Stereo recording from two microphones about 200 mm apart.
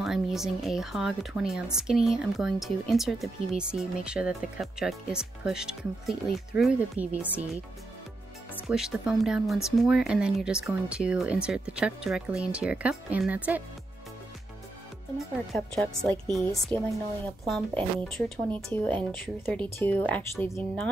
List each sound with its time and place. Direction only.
0.0 s speech: centre (ahead or behind)
8.6 s speech: 5° right (ahead or behind)
15.1 s speech: centre (ahead or behind)
16.7 s a woman's voice: 25° right (ahead or behind)
18.0 s speech: centre (ahead or behind)